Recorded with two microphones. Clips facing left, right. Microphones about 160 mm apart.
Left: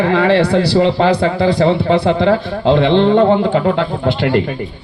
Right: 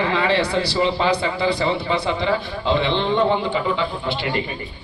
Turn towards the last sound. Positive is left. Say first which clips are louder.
# left 9 dB
turn(degrees=80)